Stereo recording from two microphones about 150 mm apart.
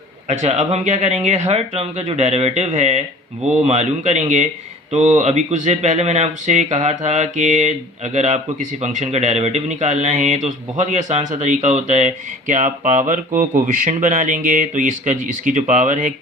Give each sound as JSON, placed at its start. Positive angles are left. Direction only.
{"t": 0.3, "sound": "speech", "side_deg": -50}